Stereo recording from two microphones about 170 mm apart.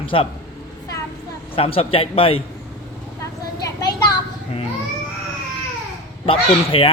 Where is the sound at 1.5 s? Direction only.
35° left (ahead or behind).